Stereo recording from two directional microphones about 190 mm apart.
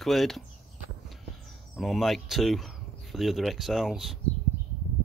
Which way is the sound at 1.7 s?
Centre (ahead or behind).